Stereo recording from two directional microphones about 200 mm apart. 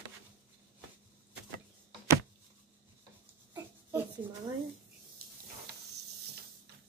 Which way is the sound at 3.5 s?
10° right (ahead or behind).